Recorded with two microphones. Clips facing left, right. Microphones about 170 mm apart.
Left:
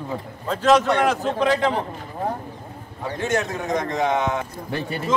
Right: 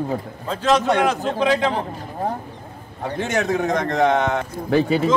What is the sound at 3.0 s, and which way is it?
Speech, 70° right (ahead or behind).